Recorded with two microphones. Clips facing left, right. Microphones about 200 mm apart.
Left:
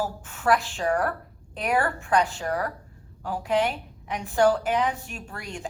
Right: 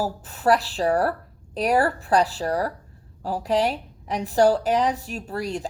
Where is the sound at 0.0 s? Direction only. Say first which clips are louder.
Right 4 dB; 35° right (ahead or behind).